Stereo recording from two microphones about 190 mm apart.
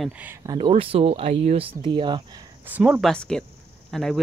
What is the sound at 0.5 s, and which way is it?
Speech, 30° right (ahead or behind).